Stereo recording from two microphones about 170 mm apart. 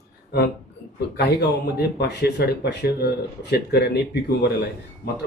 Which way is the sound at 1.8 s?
75° left (ahead or behind).